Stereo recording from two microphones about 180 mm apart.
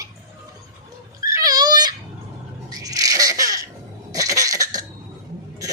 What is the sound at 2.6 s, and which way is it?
Goat, 20° right (ahead or behind).